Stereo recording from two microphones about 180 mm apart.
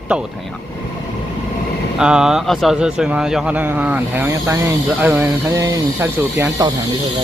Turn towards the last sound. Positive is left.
turn(degrees=-15)  # may be behind; listen again after turning